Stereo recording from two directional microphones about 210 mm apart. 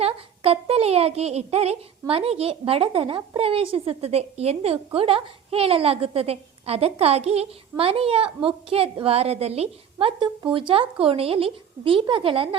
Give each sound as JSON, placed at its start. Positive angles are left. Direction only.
{"t": 0.0, "sound": "speech", "side_deg": -25}